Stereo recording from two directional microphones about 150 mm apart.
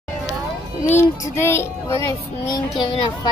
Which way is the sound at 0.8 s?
15° left (ahead or behind).